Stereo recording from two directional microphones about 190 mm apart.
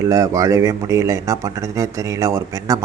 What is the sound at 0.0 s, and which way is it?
A man's voice, 15° right (ahead or behind).